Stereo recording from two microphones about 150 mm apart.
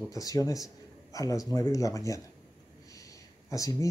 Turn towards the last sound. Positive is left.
turn(degrees=20)  # may be behind; listen again after turning